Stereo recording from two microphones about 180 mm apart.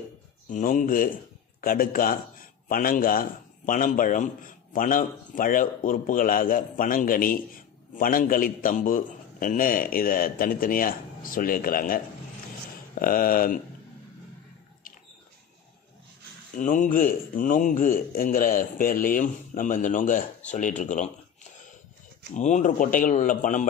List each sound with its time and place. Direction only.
0.5 s speech: 45° left (ahead or behind)
13.0 s speech: 50° left (ahead or behind)
16.5 s speech: 45° left (ahead or behind)
22.3 s speech: 40° left (ahead or behind)